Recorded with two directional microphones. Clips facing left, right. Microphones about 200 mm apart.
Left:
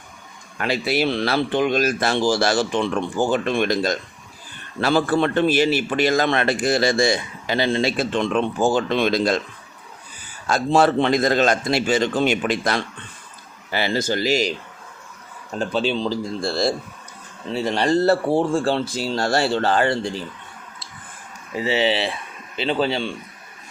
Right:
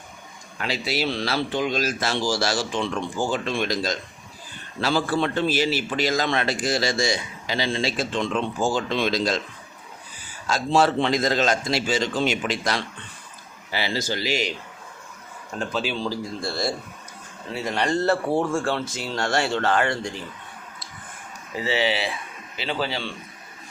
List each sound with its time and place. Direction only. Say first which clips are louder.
0.6 s a man's voice: left 5 dB; 55° left (ahead or behind)
10.4 s a man's voice: left 3 dB; 55° left (ahead or behind)
15.5 s speech: left 5 dB; 30° left (ahead or behind)
21.5 s speech: left 4 dB; 20° left (ahead or behind)